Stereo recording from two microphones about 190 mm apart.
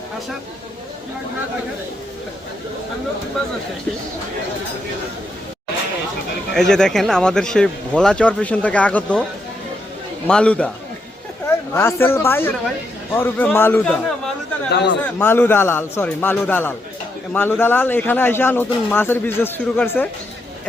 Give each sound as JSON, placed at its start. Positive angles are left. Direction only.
{"t": 6.5, "sound": "speech", "side_deg": 5}
{"t": 10.2, "sound": "speech", "side_deg": 5}
{"t": 14.7, "sound": "speech", "side_deg": 65}
{"t": 15.0, "sound": "speech", "side_deg": 10}